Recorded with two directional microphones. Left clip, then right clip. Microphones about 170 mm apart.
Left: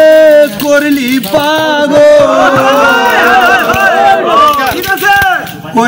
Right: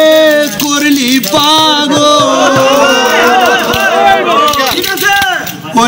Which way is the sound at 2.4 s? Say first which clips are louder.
Left 1 dB; 45° right (ahead or behind).